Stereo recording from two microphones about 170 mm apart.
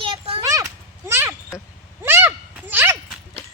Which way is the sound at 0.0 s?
30° right (ahead or behind).